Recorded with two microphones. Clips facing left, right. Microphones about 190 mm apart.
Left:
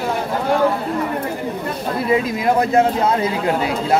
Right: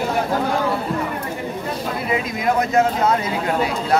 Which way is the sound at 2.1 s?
30° left (ahead or behind).